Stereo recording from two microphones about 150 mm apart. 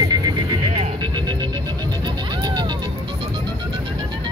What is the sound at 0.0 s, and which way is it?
Music, 25° right (ahead or behind).